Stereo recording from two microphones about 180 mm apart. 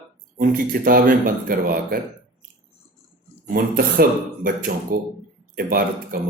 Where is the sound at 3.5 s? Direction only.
55° right (ahead or behind).